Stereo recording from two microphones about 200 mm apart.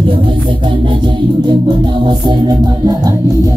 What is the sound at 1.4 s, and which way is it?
Music, 20° right (ahead or behind).